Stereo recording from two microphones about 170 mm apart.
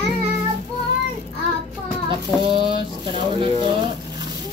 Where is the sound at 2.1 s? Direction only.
30° right (ahead or behind).